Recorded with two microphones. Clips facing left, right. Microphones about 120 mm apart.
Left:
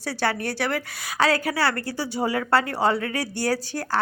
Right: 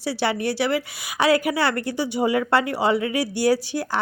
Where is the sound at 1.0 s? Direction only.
15° right (ahead or behind).